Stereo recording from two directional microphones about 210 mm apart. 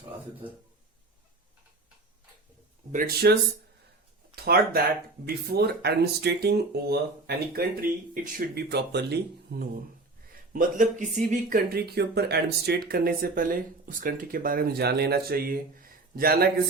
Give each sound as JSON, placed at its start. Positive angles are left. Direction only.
{"t": 2.9, "sound": "speech", "side_deg": -45}
{"t": 4.4, "sound": "speech", "side_deg": -45}